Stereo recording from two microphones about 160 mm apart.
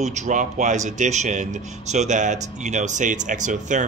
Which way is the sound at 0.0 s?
45° right (ahead or behind).